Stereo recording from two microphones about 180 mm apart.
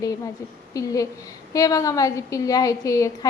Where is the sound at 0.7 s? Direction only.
20° left (ahead or behind).